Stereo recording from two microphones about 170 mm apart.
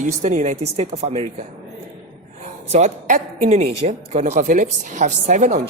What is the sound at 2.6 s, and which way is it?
Speech, 45° right (ahead or behind).